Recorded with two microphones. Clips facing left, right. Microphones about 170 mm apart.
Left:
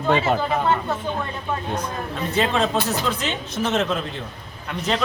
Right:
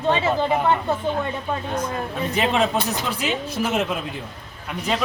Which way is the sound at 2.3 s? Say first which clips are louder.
Even; 15° right (ahead or behind).